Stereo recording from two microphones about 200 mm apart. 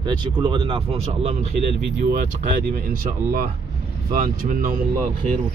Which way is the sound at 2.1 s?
40° right (ahead or behind).